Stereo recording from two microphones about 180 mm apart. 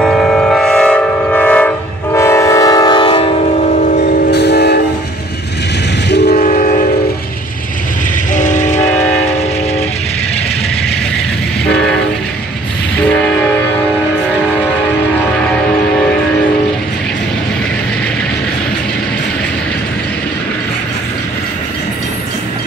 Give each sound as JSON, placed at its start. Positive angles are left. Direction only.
{"t": 0.0, "sound": "train", "side_deg": 5}
{"t": 3.6, "sound": "train", "side_deg": 40}
{"t": 4.3, "sound": "train", "side_deg": 65}
{"t": 6.0, "sound": "train", "side_deg": 70}
{"t": 6.3, "sound": "train", "side_deg": 45}
{"t": 8.3, "sound": "train", "side_deg": 45}
{"t": 11.6, "sound": "train", "side_deg": 5}
{"t": 13.0, "sound": "train", "side_deg": 5}